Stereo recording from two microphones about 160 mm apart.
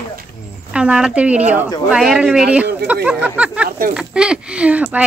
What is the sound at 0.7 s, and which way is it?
Speech, 5° right (ahead or behind).